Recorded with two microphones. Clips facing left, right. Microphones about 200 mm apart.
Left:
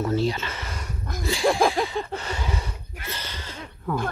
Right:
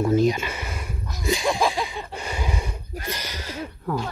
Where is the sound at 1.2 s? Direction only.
20° right (ahead or behind).